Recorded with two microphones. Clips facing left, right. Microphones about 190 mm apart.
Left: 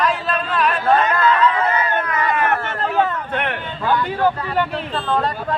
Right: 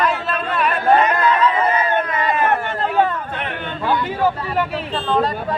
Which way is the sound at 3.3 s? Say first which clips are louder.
Left 4 dB; 65° left (ahead or behind).